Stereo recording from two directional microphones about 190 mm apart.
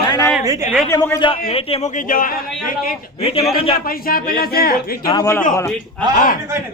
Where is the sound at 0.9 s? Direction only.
15° left (ahead or behind); by 2.3 s 45° left (ahead or behind).